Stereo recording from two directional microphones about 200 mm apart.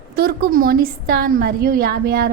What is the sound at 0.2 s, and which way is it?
A woman's voice, 50° right (ahead or behind).